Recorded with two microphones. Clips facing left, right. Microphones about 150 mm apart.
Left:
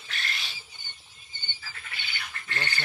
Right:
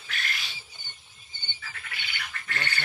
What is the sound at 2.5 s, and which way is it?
Duck, 30° left (ahead or behind).